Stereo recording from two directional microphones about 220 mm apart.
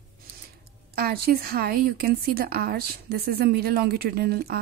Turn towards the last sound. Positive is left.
turn(degrees=-45)  # may be behind; listen again after turning